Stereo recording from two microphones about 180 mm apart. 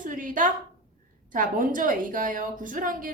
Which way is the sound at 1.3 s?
50° right (ahead or behind).